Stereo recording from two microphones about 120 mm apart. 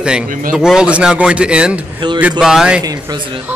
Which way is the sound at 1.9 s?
40° right (ahead or behind).